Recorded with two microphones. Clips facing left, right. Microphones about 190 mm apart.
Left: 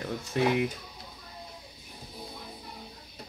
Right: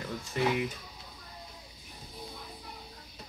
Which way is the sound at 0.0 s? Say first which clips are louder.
Left 3 dB; 55° left (ahead or behind).